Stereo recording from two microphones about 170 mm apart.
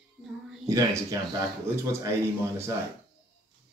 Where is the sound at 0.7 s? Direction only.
20° right (ahead or behind).